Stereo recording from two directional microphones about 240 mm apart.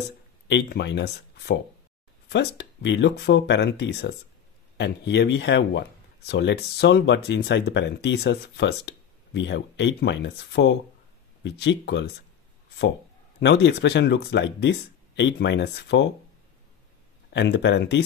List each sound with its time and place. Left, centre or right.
0.5 s speech: left
13.4 s speech: left
17.3 s speech: left